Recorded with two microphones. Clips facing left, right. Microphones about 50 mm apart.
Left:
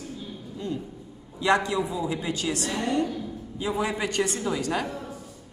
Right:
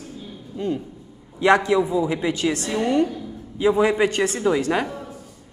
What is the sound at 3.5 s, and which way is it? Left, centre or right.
A woman's voice, right.